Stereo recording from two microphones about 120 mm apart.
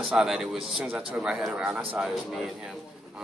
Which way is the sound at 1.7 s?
15° right (ahead or behind).